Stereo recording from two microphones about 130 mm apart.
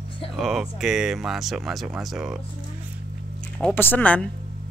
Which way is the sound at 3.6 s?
10° left (ahead or behind).